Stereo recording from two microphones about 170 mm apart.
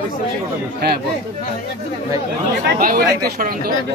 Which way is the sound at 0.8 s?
70° right (ahead or behind).